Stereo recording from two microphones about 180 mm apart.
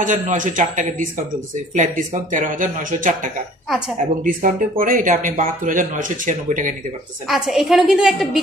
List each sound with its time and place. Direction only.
0.0 s speech: 45° right (ahead or behind)
4.2 s speech: 50° right (ahead or behind)
7.2 s a woman's voice: centre (ahead or behind)